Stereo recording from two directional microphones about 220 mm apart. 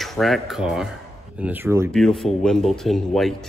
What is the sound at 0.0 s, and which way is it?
Speech, centre (ahead or behind).